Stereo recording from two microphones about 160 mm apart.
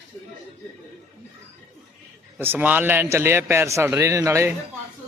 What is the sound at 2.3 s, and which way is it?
Speech, 10° right (ahead or behind).